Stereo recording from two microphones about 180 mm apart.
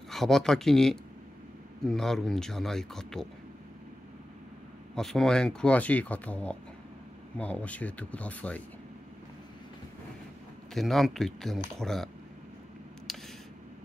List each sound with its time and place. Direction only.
0.1 s speech: centre (ahead or behind)
4.9 s speech: centre (ahead or behind)
10.7 s speech: centre (ahead or behind)